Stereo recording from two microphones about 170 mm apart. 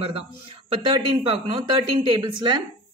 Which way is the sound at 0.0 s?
30° right (ahead or behind).